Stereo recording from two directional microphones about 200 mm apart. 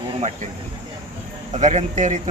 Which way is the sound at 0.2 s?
35° right (ahead or behind).